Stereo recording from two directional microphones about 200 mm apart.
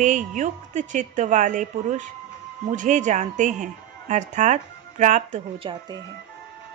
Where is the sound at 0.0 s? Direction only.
40° right (ahead or behind).